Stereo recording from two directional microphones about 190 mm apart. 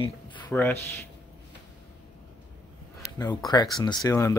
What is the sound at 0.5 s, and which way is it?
Speech, 10° left (ahead or behind).